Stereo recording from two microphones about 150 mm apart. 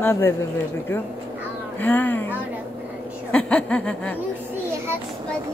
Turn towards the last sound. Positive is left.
turn(degrees=10)  # may be behind; listen again after turning